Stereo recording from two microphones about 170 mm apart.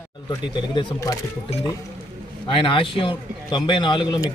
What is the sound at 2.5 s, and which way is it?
A man's voice, 30° left (ahead or behind).